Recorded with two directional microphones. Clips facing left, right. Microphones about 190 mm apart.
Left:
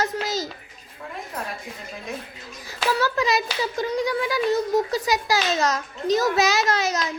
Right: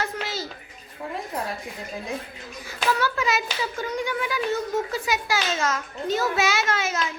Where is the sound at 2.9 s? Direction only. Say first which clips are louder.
Left 2 dB; 35° left (ahead or behind).